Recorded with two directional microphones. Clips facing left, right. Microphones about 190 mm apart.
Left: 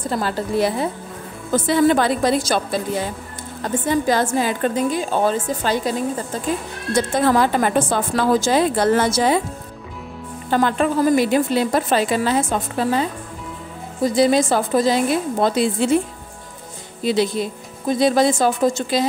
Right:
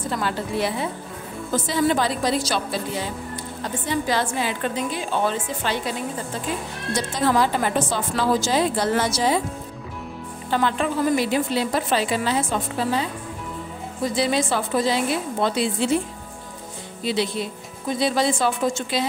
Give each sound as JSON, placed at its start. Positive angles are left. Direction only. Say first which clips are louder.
{"t": 0.1, "sound": "a woman's voice", "louder": "left 5 dB", "side_deg": 40}
{"t": 1.5, "sound": "a woman's voice", "louder": "left 5 dB", "side_deg": 55}
{"t": 7.0, "sound": "a woman's voice", "louder": "left 4 dB", "side_deg": 55}
{"t": 10.5, "sound": "a woman's voice", "louder": "left 4 dB", "side_deg": 50}
{"t": 14.0, "sound": "a woman's voice", "louder": "left 6 dB", "side_deg": 45}
{"t": 17.0, "sound": "a woman's voice", "louder": "left 5 dB", "side_deg": 45}